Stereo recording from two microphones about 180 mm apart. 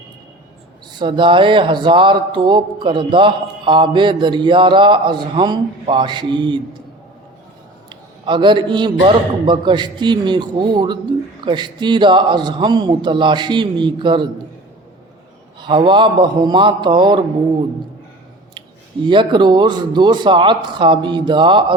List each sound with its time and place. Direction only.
0.9 s speech: 25° right (ahead or behind)
7.9 s speech: 25° right (ahead or behind)
15.6 s speech: 25° right (ahead or behind)
19.0 s speech: 25° right (ahead or behind)